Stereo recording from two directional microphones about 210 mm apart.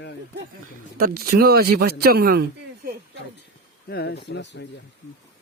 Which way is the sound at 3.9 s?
50° left (ahead or behind).